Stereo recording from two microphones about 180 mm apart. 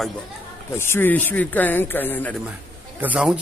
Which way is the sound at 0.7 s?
15° left (ahead or behind).